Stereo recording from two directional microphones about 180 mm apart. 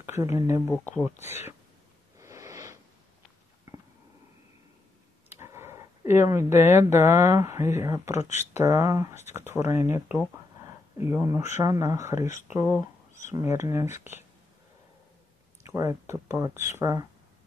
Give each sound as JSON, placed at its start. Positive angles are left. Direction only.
{"t": 0.2, "sound": "speech", "side_deg": -15}
{"t": 2.1, "sound": "a sound", "side_deg": -15}
{"t": 5.3, "sound": "a sound", "side_deg": -15}
{"t": 7.1, "sound": "speech", "side_deg": -15}
{"t": 8.2, "sound": "speech", "side_deg": 40}
{"t": 8.5, "sound": "speech", "side_deg": -15}
{"t": 12.2, "sound": "speech", "side_deg": 40}
{"t": 13.1, "sound": "a sound", "side_deg": 45}
{"t": 13.4, "sound": "speech", "side_deg": -15}
{"t": 15.7, "sound": "speech", "side_deg": -15}